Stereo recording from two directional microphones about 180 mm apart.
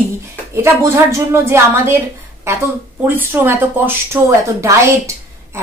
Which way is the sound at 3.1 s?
10° right (ahead or behind).